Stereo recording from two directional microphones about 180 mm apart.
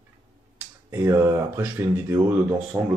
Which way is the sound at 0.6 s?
15° right (ahead or behind).